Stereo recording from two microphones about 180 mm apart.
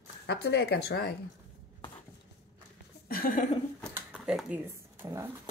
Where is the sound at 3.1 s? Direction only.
50° left (ahead or behind).